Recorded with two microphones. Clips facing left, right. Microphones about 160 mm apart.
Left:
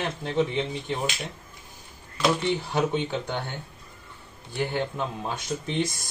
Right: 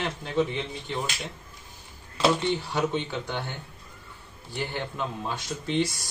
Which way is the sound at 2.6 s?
15° left (ahead or behind).